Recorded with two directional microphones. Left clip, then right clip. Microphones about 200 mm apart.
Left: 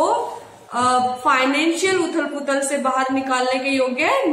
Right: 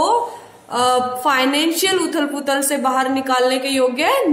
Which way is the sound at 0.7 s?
55° right (ahead or behind).